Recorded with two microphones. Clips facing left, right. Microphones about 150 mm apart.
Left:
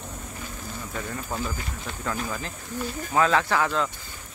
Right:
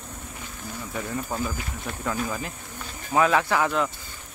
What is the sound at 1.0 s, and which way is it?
Speech, 10° right (ahead or behind).